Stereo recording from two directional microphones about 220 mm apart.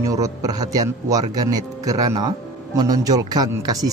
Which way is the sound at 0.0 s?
15° right (ahead or behind).